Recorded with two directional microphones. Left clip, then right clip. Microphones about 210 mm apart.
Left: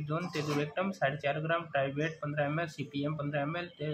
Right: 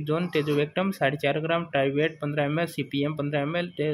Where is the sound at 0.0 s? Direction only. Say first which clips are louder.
Right 9 dB; 35° right (ahead or behind).